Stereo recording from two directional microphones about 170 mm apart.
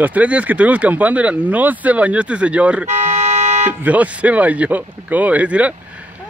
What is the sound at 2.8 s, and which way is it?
Car alarm, 45° right (ahead or behind).